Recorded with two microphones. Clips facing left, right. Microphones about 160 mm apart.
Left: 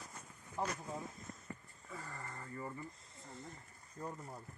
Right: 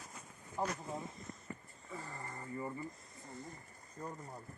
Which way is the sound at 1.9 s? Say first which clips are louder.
Right 2 dB; 20° right (ahead or behind).